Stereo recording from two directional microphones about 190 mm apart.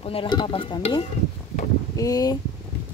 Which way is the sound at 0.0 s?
30° left (ahead or behind).